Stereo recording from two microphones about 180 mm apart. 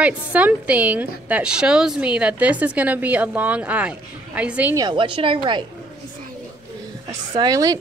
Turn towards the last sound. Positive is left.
turn(degrees=-20)  # may be behind; listen again after turning